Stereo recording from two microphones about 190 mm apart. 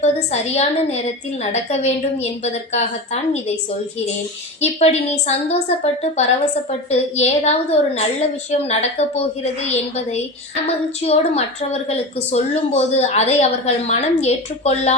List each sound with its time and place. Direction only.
0.0 s a woman's voice: 35° left (ahead or behind)
4.6 s a woman's voice: 35° left (ahead or behind)